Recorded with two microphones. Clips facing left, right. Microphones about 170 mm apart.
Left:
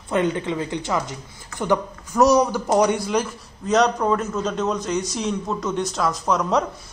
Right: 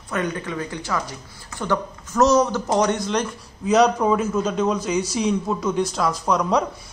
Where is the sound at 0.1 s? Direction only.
25° left (ahead or behind).